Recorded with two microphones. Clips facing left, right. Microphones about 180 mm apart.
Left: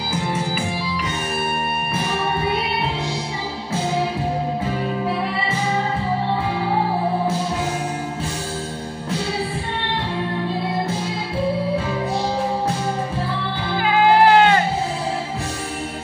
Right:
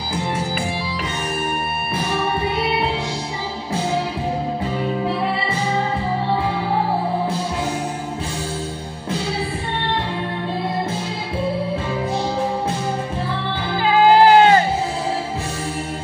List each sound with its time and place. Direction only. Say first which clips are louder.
13.8 s music: right 2 dB; 35° right (ahead or behind)